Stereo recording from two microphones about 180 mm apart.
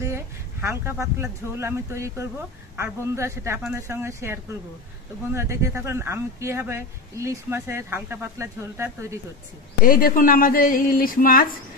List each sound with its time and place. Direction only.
0.0 s speech: 15° right (ahead or behind)
9.8 s speech: 55° left (ahead or behind)